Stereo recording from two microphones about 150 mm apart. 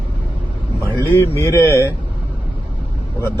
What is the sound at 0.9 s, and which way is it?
Speech, 15° left (ahead or behind).